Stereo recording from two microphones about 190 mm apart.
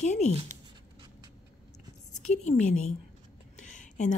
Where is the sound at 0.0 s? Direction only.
40° left (ahead or behind).